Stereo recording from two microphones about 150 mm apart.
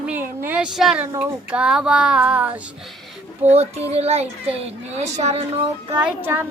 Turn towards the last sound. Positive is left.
turn(degrees=-15)  # may be behind; listen again after turning